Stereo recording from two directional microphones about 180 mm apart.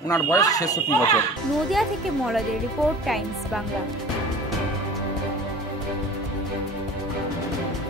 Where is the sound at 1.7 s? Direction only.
Centre (ahead or behind).